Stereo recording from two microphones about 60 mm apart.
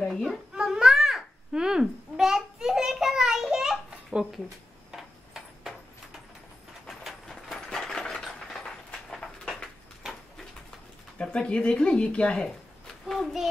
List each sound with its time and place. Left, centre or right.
0.1 s a child's voice: centre
0.6 s babbling: centre
4.1 s speech: right
4.9 s a sound: centre
11.1 s speech: centre
13.0 s speech: centre